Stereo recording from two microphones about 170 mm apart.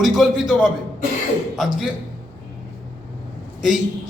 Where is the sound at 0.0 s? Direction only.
Centre (ahead or behind).